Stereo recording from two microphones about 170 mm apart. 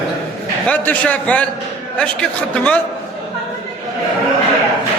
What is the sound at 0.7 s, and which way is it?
A man's voice, 10° left (ahead or behind).